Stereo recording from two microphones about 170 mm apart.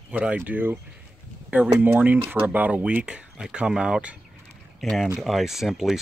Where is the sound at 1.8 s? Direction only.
10° right (ahead or behind).